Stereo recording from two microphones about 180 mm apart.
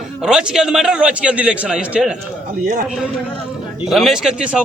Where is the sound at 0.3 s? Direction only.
5° right (ahead or behind).